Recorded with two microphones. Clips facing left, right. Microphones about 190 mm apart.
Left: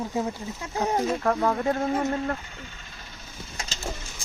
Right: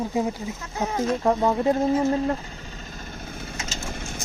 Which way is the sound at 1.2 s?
20° right (ahead or behind).